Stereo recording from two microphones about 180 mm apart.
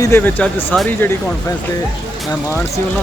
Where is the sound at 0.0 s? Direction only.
10° left (ahead or behind).